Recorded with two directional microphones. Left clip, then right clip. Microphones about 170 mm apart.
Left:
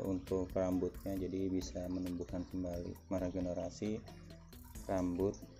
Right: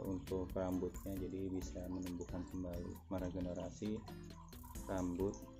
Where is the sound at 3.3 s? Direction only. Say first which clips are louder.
Left 5 dB; 10° left (ahead or behind).